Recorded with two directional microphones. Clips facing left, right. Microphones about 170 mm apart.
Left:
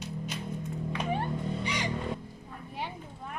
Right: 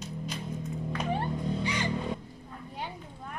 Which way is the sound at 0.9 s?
5° left (ahead or behind).